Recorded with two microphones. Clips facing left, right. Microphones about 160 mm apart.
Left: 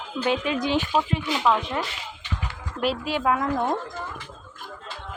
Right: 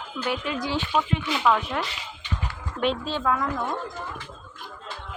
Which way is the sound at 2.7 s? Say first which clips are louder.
Even; 5° left (ahead or behind).